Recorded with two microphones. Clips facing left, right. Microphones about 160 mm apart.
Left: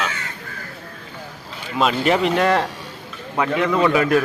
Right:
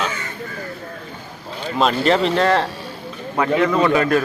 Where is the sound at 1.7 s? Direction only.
10° left (ahead or behind).